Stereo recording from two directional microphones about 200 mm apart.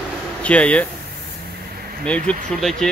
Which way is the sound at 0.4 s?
5° left (ahead or behind).